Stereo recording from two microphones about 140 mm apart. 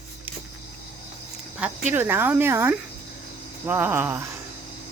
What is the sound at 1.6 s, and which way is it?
Speech, 10° right (ahead or behind).